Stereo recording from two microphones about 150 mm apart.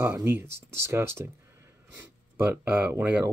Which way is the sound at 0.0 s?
15° right (ahead or behind).